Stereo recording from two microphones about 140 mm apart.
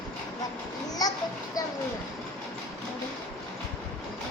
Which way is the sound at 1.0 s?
25° left (ahead or behind).